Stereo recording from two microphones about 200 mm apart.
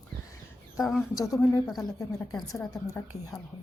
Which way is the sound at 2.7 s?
15° left (ahead or behind).